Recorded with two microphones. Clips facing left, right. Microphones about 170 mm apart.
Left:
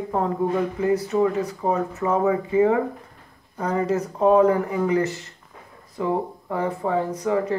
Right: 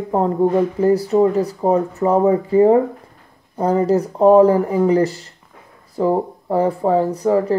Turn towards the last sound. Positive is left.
turn(degrees=-35)  # may be behind; listen again after turning